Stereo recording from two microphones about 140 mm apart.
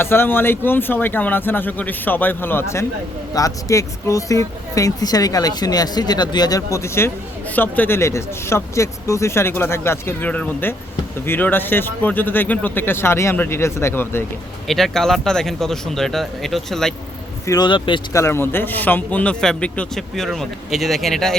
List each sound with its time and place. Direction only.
0.0 s speech: 15° left (ahead or behind)
14.7 s speech: centre (ahead or behind)
17.4 s speech: 30° left (ahead or behind)
18.1 s speech: 20° left (ahead or behind); by 21.3 s centre (ahead or behind)